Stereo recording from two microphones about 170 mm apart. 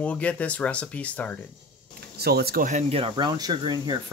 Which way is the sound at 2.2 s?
65° right (ahead or behind).